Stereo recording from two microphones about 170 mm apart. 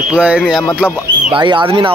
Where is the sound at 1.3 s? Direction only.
30° right (ahead or behind).